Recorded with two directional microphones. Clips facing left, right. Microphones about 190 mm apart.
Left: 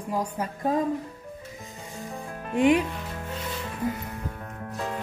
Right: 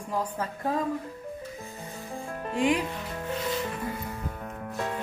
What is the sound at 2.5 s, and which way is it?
Speech, 20° left (ahead or behind).